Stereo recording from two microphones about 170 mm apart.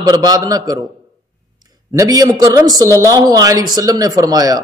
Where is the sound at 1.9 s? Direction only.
20° right (ahead or behind).